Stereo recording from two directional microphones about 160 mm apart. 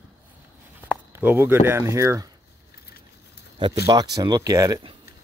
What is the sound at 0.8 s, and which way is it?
Speech, 10° right (ahead or behind).